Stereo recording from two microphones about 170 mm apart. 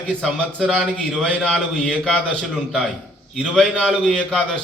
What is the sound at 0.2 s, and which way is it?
A man's voice, 5° left (ahead or behind).